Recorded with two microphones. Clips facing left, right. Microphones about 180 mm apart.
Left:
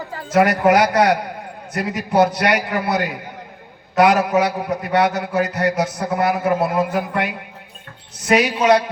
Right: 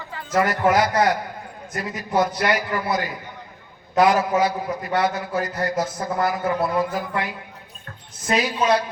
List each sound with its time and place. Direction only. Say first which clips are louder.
0.3 s a man's voice: left 5 dB; 70° left (ahead or behind)